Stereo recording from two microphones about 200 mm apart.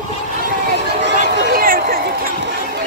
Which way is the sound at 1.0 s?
55° right (ahead or behind).